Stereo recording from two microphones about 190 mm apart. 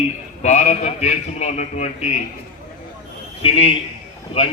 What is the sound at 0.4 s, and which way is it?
A man's voice, 35° left (ahead or behind).